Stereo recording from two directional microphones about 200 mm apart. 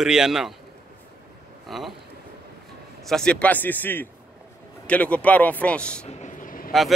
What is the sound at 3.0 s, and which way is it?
Speech, 5° left (ahead or behind).